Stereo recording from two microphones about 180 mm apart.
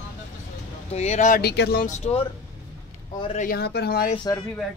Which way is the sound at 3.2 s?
35° left (ahead or behind).